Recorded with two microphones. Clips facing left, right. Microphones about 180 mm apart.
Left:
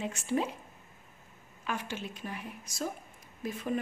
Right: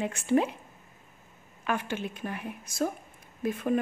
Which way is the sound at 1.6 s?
55° right (ahead or behind).